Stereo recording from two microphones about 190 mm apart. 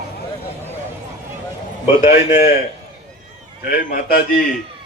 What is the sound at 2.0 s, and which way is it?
Speech, 45° left (ahead or behind).